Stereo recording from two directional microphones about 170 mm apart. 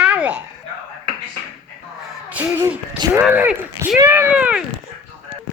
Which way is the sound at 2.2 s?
10° right (ahead or behind).